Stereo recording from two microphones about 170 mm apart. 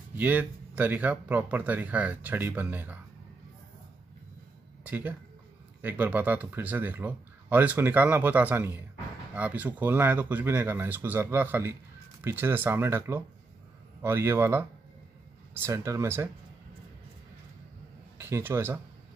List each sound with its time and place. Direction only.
0.1 s speech: 10° right (ahead or behind)
4.8 s speech: 10° right (ahead or behind)
18.1 s speech: 15° right (ahead or behind)